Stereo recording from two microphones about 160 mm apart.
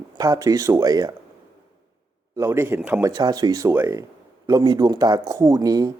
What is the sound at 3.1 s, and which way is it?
Speech, 25° right (ahead or behind).